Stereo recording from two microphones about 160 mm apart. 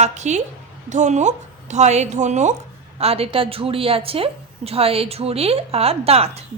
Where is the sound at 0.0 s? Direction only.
45° right (ahead or behind).